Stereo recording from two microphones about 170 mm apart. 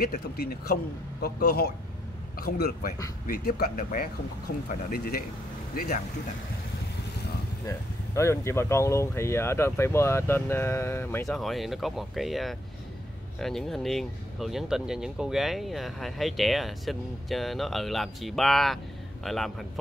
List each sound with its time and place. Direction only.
0.0 s a man's voice: 65° left (ahead or behind)
7.6 s speech: 15° left (ahead or behind)
11.2 s speech: centre (ahead or behind)